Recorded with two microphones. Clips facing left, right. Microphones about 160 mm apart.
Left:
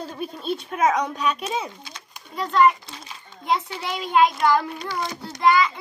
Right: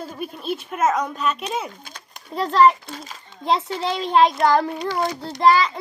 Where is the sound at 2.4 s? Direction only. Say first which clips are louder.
Right 3 dB; 35° right (ahead or behind).